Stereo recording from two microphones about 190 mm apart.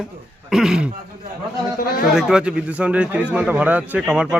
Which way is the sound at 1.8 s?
50° left (ahead or behind).